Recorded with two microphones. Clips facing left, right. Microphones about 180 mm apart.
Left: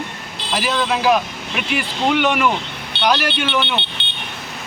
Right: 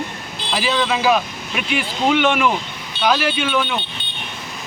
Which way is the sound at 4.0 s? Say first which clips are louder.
Left 2 dB; 75° left (ahead or behind).